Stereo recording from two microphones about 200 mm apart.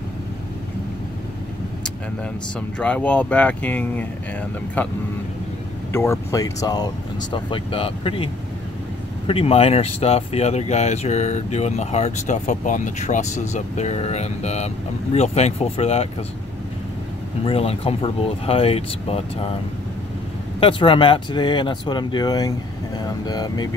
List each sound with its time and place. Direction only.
2.8 s speech: 5° left (ahead or behind)
5.9 s speech: 15° left (ahead or behind)
9.3 s speech: 30° left (ahead or behind)
17.5 s speech: 30° left (ahead or behind)
20.6 s speech: 25° left (ahead or behind)